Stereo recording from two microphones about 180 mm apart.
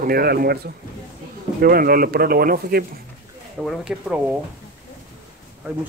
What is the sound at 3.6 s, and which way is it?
Speech, centre (ahead or behind).